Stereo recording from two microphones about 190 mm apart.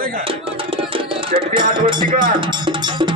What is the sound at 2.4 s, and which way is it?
Music, 25° right (ahead or behind).